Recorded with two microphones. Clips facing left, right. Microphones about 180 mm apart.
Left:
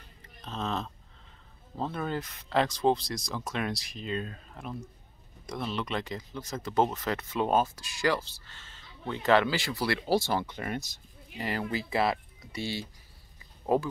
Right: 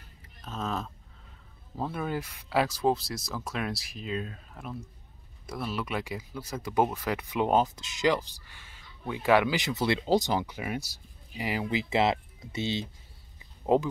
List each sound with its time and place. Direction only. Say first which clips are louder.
0.2 s music: even; 5° right (ahead or behind)
1.8 s speech: even; 10° right (ahead or behind)